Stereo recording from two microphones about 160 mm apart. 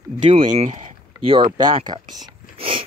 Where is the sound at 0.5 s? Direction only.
50° right (ahead or behind).